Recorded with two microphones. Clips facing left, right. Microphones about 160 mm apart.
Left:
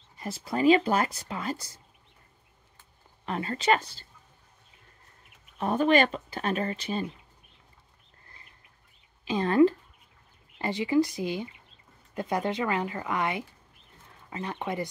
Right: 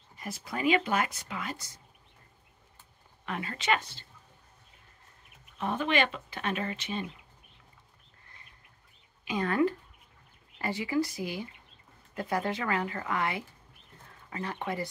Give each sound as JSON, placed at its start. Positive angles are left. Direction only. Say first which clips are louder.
{"t": 0.2, "sound": "speech", "louder": "left 6 dB", "side_deg": 30}
{"t": 3.3, "sound": "speech", "louder": "left 5 dB", "side_deg": 35}
{"t": 5.6, "sound": "speech", "louder": "left 6 dB", "side_deg": 40}
{"t": 9.2, "sound": "speech", "louder": "left 6 dB", "side_deg": 30}